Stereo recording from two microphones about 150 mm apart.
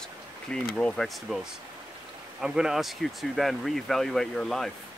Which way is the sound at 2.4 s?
5° right (ahead or behind).